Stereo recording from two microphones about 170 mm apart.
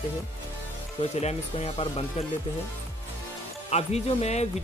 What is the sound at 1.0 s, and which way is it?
Speech, 40° left (ahead or behind).